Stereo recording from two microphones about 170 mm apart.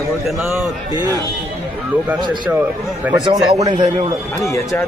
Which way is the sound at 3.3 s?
30° right (ahead or behind).